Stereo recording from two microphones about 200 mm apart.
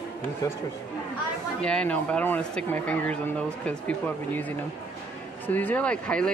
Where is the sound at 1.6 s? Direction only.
5° left (ahead or behind).